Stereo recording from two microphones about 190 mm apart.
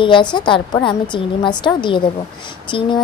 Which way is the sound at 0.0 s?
25° left (ahead or behind).